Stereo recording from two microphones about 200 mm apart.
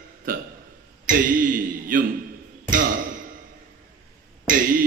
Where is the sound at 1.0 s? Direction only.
45° right (ahead or behind).